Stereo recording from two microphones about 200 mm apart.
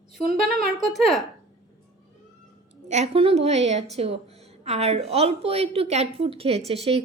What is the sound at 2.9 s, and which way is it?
A woman's voice, 35° right (ahead or behind).